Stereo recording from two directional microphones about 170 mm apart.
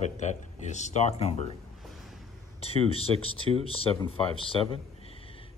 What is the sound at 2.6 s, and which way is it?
Speech, 35° left (ahead or behind).